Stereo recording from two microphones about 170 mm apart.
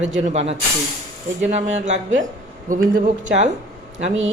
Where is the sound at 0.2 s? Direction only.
40° right (ahead or behind).